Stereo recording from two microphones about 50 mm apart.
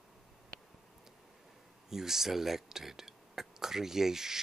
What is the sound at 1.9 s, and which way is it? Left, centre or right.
Speech, centre.